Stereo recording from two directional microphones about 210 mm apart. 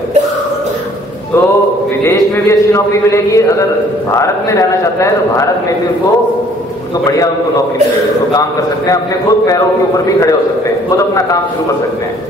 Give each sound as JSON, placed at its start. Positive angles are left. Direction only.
{"t": 2.0, "sound": "a man's voice", "side_deg": 15}
{"t": 7.1, "sound": "a man's voice", "side_deg": 15}
{"t": 10.9, "sound": "a man's voice", "side_deg": 15}